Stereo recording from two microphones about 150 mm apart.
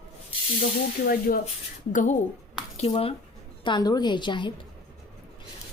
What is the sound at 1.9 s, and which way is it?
Speech, 55° left (ahead or behind).